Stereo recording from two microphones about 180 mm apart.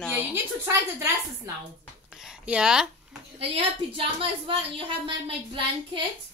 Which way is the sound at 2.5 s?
5° right (ahead or behind).